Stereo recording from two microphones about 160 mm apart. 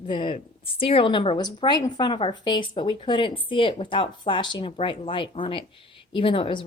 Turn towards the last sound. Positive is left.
turn(degrees=30)  # may be behind; listen again after turning